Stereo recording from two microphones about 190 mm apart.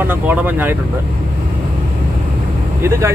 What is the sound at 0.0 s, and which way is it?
Speech, 10° right (ahead or behind).